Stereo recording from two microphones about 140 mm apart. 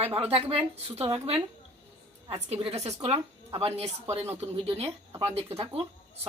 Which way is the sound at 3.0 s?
45° right (ahead or behind).